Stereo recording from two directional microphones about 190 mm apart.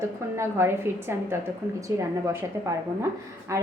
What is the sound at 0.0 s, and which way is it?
A woman's voice, 15° right (ahead or behind).